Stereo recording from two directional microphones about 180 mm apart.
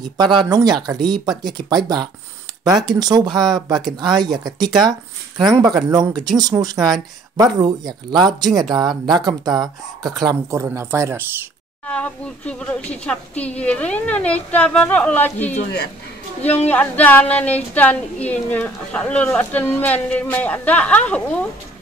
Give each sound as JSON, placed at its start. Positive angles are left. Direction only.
{"t": 0.2, "sound": "speech", "side_deg": -25}
{"t": 11.8, "sound": "speech", "side_deg": 5}